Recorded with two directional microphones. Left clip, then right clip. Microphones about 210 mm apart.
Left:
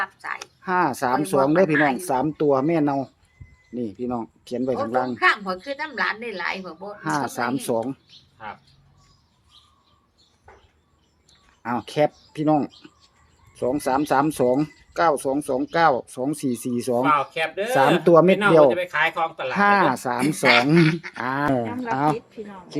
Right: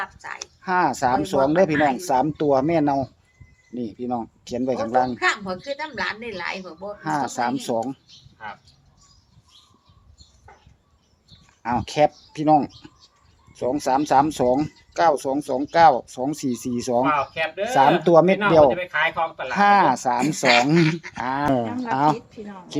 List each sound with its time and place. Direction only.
0.0 s speech: centre (ahead or behind)
11.6 s speech: centre (ahead or behind)
17.0 s speech: 50° left (ahead or behind)
18.0 s speech: 10° left (ahead or behind)
18.8 s speech: 50° left (ahead or behind)
19.5 s speech: 5° left (ahead or behind)